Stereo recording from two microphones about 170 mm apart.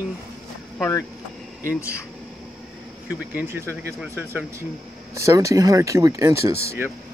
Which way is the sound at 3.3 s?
10° right (ahead or behind).